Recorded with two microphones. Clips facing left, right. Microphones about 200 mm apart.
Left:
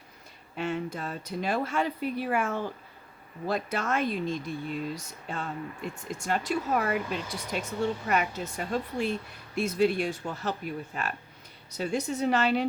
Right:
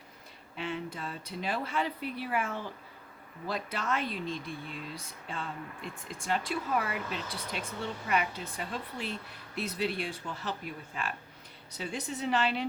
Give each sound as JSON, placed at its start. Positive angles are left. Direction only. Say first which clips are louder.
{"t": 0.5, "sound": "speech", "louder": "left 5 dB", "side_deg": 45}
{"t": 11.7, "sound": "speech", "louder": "left 7 dB", "side_deg": 45}